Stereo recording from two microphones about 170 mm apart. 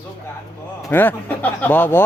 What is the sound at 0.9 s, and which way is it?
A man's voice, 10° left (ahead or behind).